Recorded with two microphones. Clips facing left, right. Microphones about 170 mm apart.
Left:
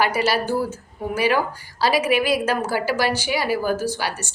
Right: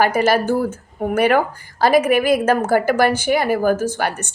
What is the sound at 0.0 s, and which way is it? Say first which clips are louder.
A woman's voice: right 5 dB; 50° right (ahead or behind).